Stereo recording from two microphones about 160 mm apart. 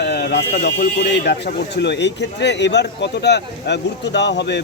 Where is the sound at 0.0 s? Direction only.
90° left.